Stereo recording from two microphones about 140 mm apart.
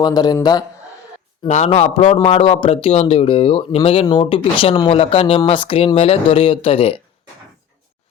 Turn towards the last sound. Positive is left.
turn(degrees=40)  # may be behind; listen again after turning